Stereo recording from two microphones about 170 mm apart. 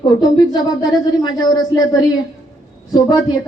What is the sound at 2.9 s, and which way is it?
Speech, 25° left (ahead or behind).